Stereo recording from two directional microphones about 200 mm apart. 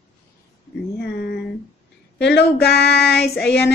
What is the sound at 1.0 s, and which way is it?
Speech, 50° left (ahead or behind).